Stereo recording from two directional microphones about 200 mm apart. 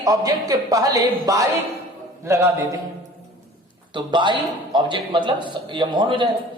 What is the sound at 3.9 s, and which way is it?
A man's voice, 25° right (ahead or behind).